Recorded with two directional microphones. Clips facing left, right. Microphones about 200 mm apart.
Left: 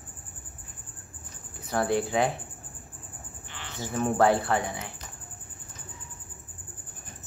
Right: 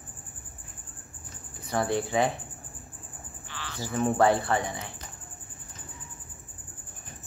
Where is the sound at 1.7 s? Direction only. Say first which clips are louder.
Left 1 dB; centre (ahead or behind).